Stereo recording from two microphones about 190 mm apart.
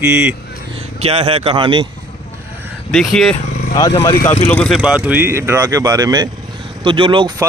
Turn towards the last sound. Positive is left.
turn(degrees=-25)  # may be behind; listen again after turning